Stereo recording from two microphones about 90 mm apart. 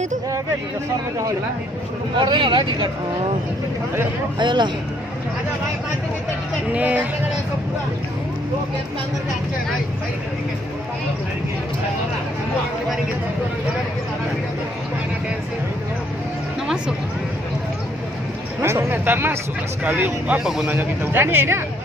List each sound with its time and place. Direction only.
2.1 s speech: 60° right (ahead or behind)
4.4 s speech: 60° right (ahead or behind)
6.7 s speech: 15° right (ahead or behind)
16.6 s music: 10° right (ahead or behind)
18.6 s speech: 30° right (ahead or behind)